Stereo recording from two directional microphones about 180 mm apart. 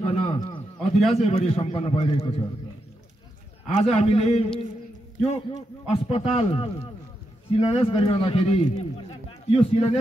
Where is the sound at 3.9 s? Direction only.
35° left (ahead or behind).